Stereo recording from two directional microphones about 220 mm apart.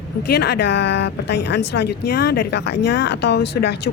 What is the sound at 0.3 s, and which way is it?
Speech, 45° left (ahead or behind).